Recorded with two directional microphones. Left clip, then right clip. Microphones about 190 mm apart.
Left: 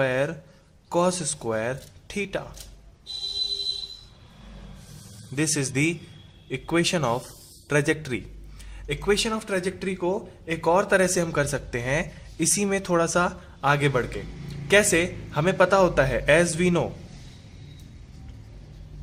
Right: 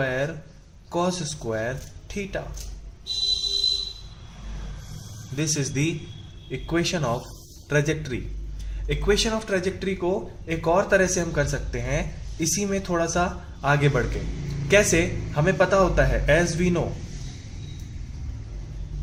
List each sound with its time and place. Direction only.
0.0 s a man's voice: 45° left (ahead or behind)
5.4 s a man's voice: 50° left (ahead or behind)
8.9 s a man's voice: 35° left (ahead or behind)